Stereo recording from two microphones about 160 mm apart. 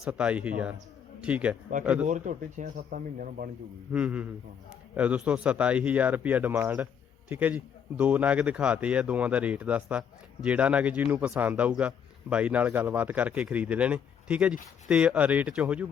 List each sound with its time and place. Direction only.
0.0 s a man's voice: 5° right (ahead or behind)
2.0 s speech: 50° right (ahead or behind)
3.9 s a man's voice: 5° right (ahead or behind)